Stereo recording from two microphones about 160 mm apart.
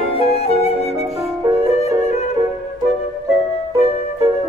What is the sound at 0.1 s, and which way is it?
Flute, 35° left (ahead or behind).